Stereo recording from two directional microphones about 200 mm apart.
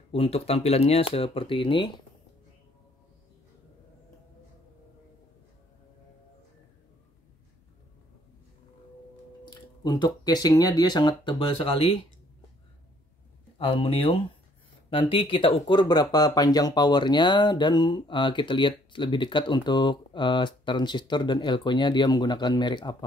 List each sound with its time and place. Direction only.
0.1 s speech: 30° left (ahead or behind)
9.4 s speech: 20° left (ahead or behind)
13.6 s speech: 25° left (ahead or behind)